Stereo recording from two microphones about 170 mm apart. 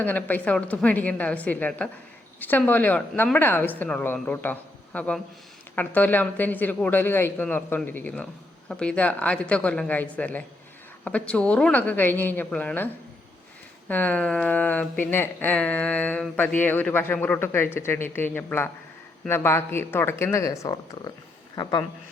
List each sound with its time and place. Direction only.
0.0 s speech: 10° left (ahead or behind); by 21.8 s 25° left (ahead or behind)